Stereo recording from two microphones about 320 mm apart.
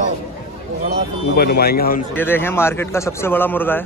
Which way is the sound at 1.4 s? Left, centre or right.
Left.